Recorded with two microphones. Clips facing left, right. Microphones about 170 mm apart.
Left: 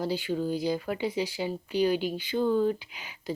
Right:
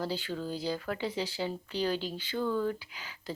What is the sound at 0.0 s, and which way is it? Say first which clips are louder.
Speech: left 5 dB; 15° left (ahead or behind).